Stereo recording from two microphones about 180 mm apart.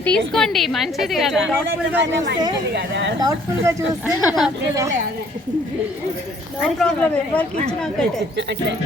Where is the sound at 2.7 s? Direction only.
75° right (ahead or behind).